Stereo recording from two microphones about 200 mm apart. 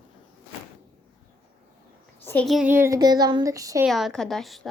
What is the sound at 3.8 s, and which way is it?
Speech, centre (ahead or behind).